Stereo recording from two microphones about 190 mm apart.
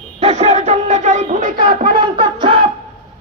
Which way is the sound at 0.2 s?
35° right (ahead or behind).